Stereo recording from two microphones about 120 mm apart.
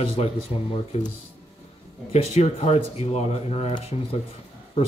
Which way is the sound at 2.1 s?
60° left (ahead or behind).